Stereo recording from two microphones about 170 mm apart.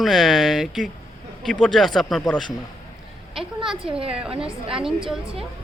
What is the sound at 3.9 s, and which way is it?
Speech, 35° right (ahead or behind).